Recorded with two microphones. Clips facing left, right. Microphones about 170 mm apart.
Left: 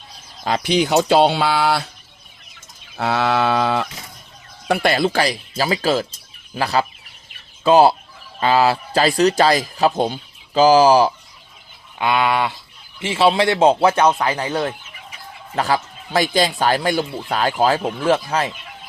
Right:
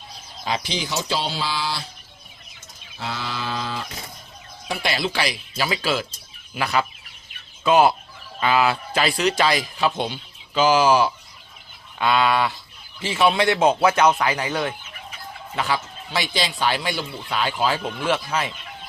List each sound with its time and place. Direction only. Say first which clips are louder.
0.4 s speech: left 8 dB; 55° left (ahead or behind)
2.9 s a sound: left 12 dB; 65° left (ahead or behind)
4.7 s a man's voice: left 8 dB; 55° left (ahead or behind); by 11.1 s 35° left (ahead or behind)
11.9 s a man's voice: left 1 dB; 20° left (ahead or behind)
15.5 s a man's voice: left 5 dB; 40° left (ahead or behind)